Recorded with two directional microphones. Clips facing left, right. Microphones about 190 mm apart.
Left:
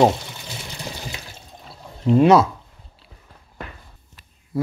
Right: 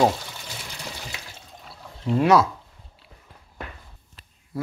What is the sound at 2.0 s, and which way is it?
Speech, 25° left (ahead or behind).